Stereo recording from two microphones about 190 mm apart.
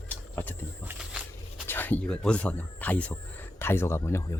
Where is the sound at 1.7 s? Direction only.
10° left (ahead or behind).